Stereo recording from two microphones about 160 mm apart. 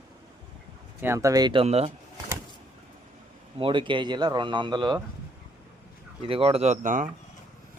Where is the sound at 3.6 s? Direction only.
30° right (ahead or behind).